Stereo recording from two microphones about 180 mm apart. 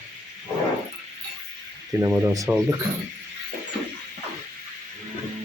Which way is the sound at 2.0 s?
15° right (ahead or behind).